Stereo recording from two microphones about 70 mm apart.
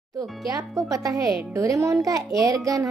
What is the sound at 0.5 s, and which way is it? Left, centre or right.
A child's voice, right.